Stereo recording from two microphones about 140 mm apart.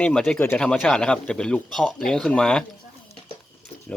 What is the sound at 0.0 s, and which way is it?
Speech, 10° left (ahead or behind).